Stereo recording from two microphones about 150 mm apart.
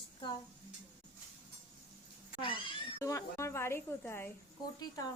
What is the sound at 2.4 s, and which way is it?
Cat, 35° left (ahead or behind).